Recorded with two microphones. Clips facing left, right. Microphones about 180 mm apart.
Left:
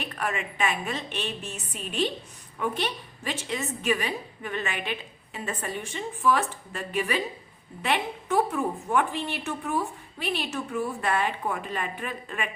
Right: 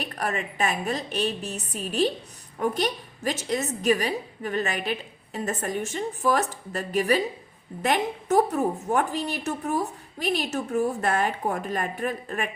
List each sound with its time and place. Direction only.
0.0 s a woman's voice: 40° right (ahead or behind)